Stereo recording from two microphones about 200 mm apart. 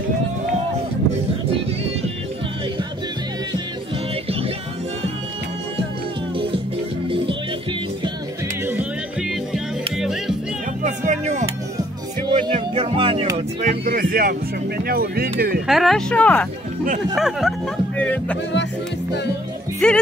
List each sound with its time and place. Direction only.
6.3 s music: 25° right (ahead or behind)
9.9 s music: centre (ahead or behind)
10.8 s music: 40° right (ahead or behind)
12.3 s music: 25° right (ahead or behind)
13.6 s speech: 40° right (ahead or behind)
15.6 s speech: centre (ahead or behind)
19.8 s speech: 5° left (ahead or behind)